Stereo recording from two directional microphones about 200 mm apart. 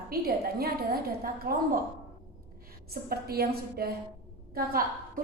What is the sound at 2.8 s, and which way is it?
A woman's voice, 50° right (ahead or behind).